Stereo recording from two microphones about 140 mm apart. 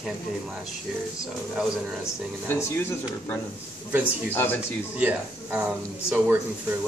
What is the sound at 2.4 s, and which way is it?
Speech, 15° left (ahead or behind).